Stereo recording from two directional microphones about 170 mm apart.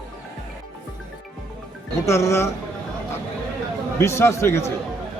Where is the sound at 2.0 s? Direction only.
15° left (ahead or behind).